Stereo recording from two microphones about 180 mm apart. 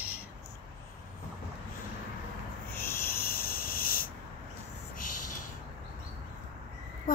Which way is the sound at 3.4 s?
55° left (ahead or behind).